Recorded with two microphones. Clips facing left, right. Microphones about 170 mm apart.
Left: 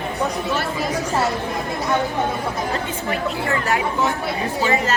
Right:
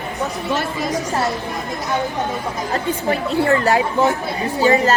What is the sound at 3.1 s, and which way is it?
Speech, 35° right (ahead or behind).